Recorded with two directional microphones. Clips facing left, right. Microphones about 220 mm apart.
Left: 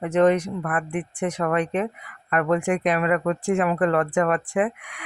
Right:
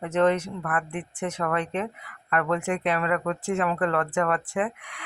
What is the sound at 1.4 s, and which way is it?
Speech, 20° left (ahead or behind).